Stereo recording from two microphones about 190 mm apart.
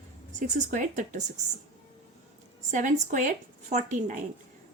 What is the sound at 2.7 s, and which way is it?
Speech, 40° right (ahead or behind).